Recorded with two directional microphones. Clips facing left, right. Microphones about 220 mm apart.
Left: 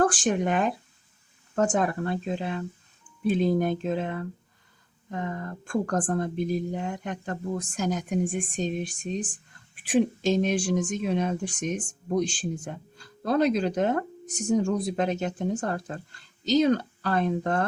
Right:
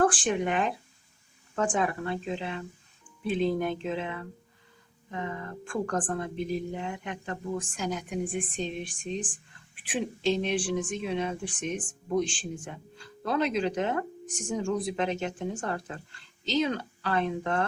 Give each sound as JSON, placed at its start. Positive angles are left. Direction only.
{"t": 0.0, "sound": "speech", "side_deg": 40}